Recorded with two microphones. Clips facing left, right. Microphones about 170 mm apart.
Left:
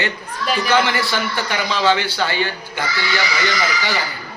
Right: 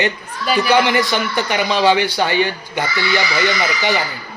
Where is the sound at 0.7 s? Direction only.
15° right (ahead or behind).